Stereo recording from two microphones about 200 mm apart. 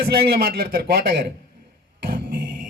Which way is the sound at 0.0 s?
50° right (ahead or behind).